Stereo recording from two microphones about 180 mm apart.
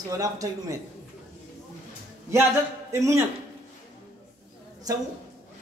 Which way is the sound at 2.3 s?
15° right (ahead or behind).